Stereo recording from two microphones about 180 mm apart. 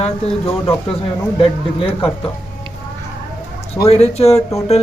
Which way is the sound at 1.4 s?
30° left (ahead or behind).